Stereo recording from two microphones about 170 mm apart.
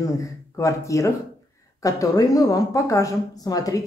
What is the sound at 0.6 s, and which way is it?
A woman's voice, 20° left (ahead or behind).